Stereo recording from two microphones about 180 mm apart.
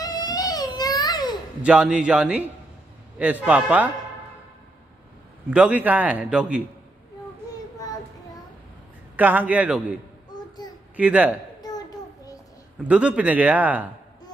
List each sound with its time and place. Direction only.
0.0 s baby cry: 20° left (ahead or behind)
1.6 s a man's voice: 5° right (ahead or behind)
5.5 s a man's voice: 5° right (ahead or behind)
9.1 s a man's voice: 10° right (ahead or behind)
10.3 s child singing: 20° left (ahead or behind)
11.0 s a man's voice: 10° right (ahead or behind)
12.8 s a man's voice: 5° right (ahead or behind)